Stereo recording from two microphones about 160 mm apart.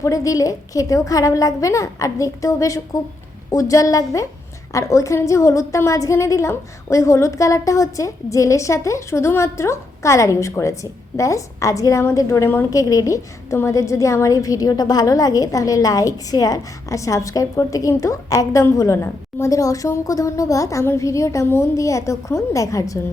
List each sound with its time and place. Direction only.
0.0 s a woman's voice: 20° left (ahead or behind)